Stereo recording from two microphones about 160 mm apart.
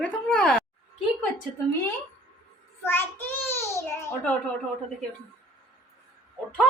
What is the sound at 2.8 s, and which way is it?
Child singing, 15° left (ahead or behind).